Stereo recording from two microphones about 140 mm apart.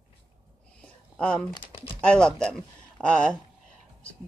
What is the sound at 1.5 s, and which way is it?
Speech, 30° left (ahead or behind).